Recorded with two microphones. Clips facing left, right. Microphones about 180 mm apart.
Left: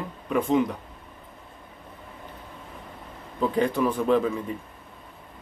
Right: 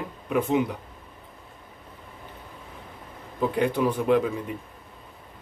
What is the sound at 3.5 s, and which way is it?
Speech, 10° right (ahead or behind).